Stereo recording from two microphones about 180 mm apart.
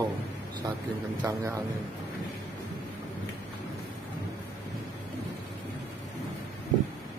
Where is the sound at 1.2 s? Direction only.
15° right (ahead or behind).